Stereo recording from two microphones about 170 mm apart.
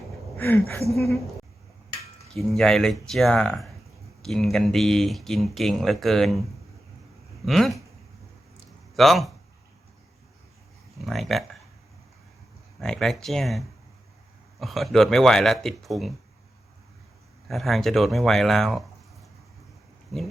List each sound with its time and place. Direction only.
0.3 s speech: 10° left (ahead or behind)
0.8 s a woman's voice: 65° left (ahead or behind)
2.3 s speech: 5° left (ahead or behind)
7.4 s speech: centre (ahead or behind)
9.0 s speech: centre (ahead or behind)
11.0 s speech: centre (ahead or behind)
12.8 s speech: 5° left (ahead or behind)
17.5 s speech: centre (ahead or behind)